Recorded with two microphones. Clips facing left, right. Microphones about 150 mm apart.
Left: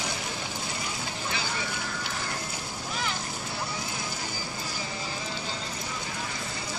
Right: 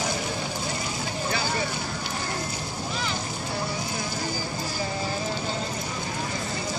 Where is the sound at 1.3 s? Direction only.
45° right (ahead or behind).